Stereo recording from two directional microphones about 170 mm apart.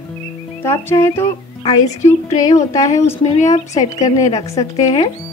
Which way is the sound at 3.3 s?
45° left (ahead or behind).